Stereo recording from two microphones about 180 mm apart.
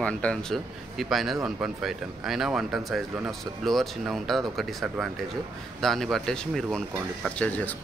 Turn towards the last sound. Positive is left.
turn(degrees=10)  # may be behind; listen again after turning